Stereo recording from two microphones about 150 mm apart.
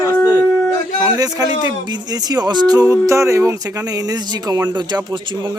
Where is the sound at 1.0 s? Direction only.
25° right (ahead or behind).